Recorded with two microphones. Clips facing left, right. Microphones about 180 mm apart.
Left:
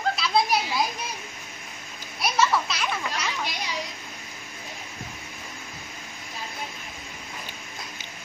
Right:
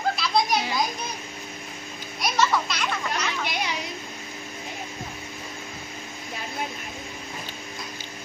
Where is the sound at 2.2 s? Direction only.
Centre (ahead or behind).